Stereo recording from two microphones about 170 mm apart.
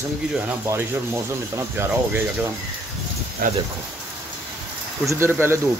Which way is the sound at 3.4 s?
55° right (ahead or behind).